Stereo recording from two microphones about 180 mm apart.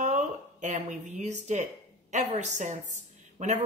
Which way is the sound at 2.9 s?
40° right (ahead or behind).